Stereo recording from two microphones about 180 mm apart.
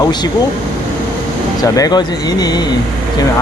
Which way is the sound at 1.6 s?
20° left (ahead or behind).